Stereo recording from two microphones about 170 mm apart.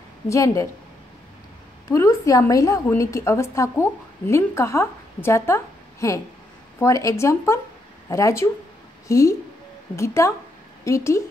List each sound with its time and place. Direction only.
0.3 s speech: 20° left (ahead or behind)
1.9 s a woman's voice: 20° left (ahead or behind)